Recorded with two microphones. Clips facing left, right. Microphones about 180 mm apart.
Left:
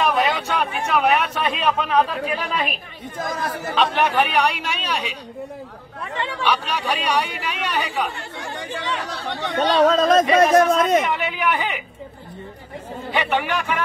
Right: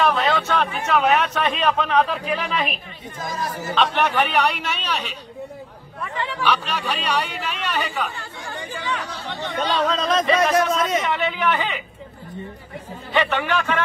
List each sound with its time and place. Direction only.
0.1 s a man's voice: 10° left (ahead or behind)
3.2 s speech: 55° left (ahead or behind)
3.7 s speech: 10° left (ahead or behind)
6.4 s speech: 10° left (ahead or behind)
8.2 s speech: 70° left (ahead or behind)
9.8 s speech: 45° left (ahead or behind)
11.1 s speech: 15° left (ahead or behind)
13.1 s speech: 15° left (ahead or behind)